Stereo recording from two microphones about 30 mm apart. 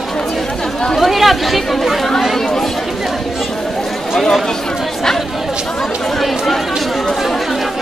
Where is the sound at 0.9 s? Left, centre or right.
Centre.